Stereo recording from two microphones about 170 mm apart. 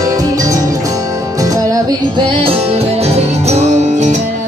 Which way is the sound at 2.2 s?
30° right (ahead or behind).